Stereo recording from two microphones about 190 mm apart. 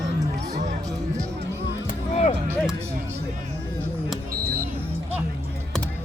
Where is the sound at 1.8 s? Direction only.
40° left (ahead or behind).